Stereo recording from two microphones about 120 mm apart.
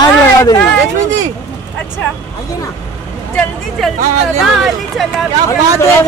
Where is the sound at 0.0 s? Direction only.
35° left (ahead or behind).